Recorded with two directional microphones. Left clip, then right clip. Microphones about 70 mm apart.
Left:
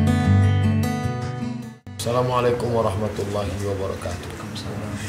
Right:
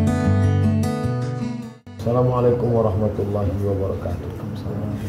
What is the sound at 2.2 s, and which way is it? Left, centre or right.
Speech, left.